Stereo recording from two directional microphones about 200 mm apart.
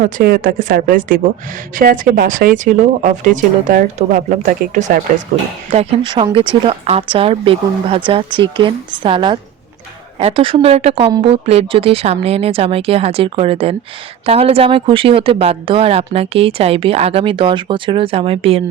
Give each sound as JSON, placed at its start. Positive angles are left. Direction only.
{"t": 0.0, "sound": "speech", "side_deg": -45}